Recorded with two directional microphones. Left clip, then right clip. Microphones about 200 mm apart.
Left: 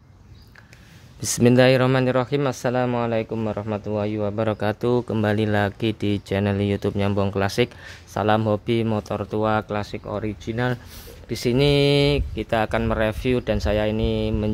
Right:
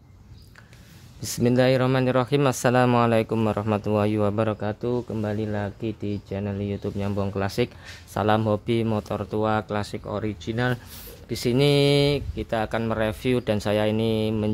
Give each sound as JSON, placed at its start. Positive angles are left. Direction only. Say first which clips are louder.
{"t": 1.2, "sound": "speech", "louder": "left 5 dB", "side_deg": 15}
{"t": 4.5, "sound": "speech", "louder": "left 5 dB", "side_deg": 10}